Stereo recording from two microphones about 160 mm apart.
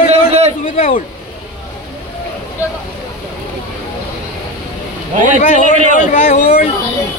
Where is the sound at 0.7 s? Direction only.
45° left (ahead or behind).